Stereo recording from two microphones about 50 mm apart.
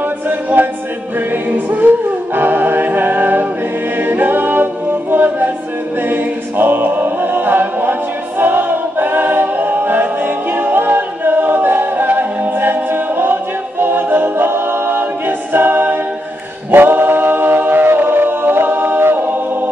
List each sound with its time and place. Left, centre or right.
0.6 s music: right
4.0 s a capella: right
6.0 s music: right
8.4 s choir: right
16.7 s a capella: right